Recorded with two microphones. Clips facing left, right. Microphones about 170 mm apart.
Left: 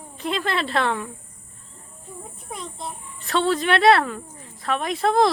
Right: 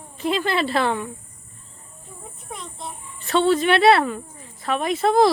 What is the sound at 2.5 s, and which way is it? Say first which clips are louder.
A child's voice: left 2 dB; centre (ahead or behind).